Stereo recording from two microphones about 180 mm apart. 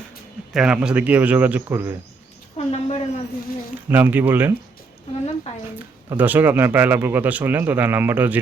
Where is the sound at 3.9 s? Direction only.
10° right (ahead or behind).